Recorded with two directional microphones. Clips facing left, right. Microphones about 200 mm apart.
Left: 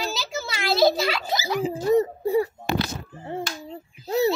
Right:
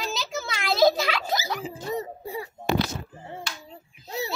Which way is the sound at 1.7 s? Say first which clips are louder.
Left 11 dB; 45° left (ahead or behind).